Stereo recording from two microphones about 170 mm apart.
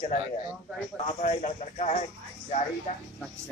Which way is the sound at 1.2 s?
40° left (ahead or behind).